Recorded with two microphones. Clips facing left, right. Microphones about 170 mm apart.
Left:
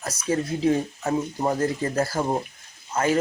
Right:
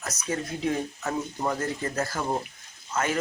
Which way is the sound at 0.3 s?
30° left (ahead or behind).